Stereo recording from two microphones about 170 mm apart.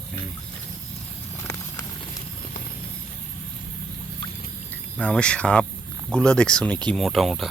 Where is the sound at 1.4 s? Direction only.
20° left (ahead or behind).